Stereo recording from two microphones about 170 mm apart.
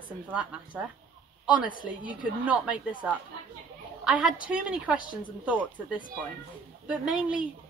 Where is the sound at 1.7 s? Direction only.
55° left (ahead or behind).